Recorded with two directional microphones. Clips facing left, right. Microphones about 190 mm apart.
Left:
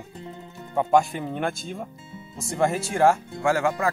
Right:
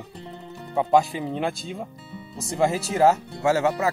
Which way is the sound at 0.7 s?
5° right (ahead or behind).